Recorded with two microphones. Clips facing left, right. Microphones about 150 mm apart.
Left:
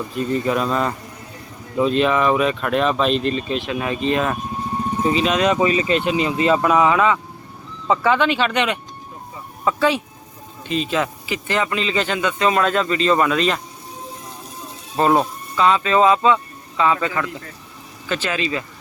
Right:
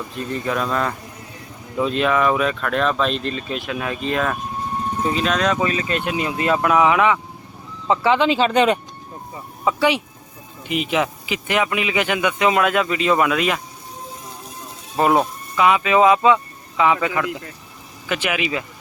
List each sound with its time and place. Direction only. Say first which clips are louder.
0.1 s speech: left 4 dB; 5° left (ahead or behind)
8.2 s speech: right 3 dB; 30° right (ahead or behind)
9.6 s speech: even; 15° right (ahead or behind)
14.9 s speech: even; 5° right (ahead or behind)